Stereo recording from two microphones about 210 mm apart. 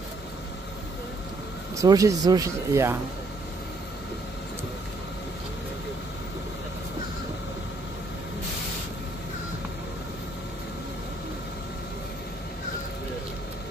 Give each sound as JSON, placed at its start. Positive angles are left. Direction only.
{"t": 1.8, "sound": "speech", "side_deg": -15}